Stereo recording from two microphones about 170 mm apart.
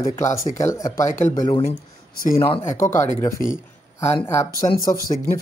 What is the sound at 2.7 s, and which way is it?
Speech, 15° left (ahead or behind).